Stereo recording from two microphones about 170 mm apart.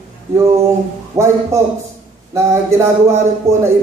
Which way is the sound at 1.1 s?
15° right (ahead or behind).